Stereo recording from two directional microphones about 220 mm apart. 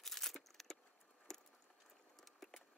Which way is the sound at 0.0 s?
Centre (ahead or behind).